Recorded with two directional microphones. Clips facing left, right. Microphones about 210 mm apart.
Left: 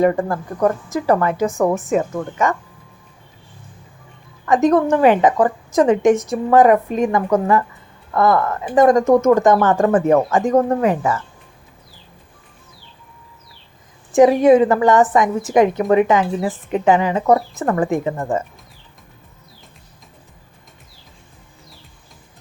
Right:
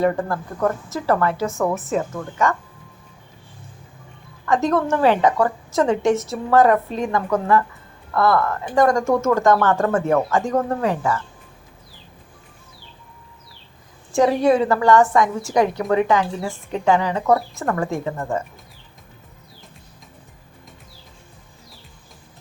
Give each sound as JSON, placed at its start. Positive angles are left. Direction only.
{"t": 0.0, "sound": "a woman's voice", "side_deg": 15}
{"t": 4.4, "sound": "a woman's voice", "side_deg": 20}
{"t": 14.1, "sound": "a woman's voice", "side_deg": 20}